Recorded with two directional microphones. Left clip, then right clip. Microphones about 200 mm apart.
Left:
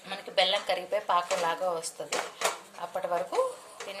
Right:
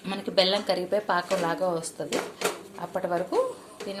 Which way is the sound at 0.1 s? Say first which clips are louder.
Right 3 dB; 20° right (ahead or behind).